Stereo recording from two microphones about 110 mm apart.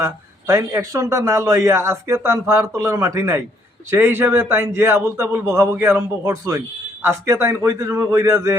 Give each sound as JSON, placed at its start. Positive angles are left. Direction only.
{"t": 0.0, "sound": "a man's voice", "side_deg": -30}